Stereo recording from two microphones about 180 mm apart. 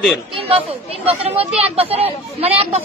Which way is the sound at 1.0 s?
35° right (ahead or behind).